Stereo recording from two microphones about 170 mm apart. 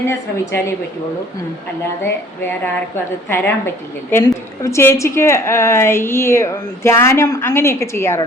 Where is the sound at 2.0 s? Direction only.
15° left (ahead or behind).